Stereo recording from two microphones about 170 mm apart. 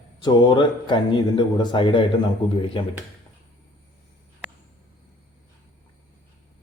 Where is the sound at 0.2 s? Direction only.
25° left (ahead or behind).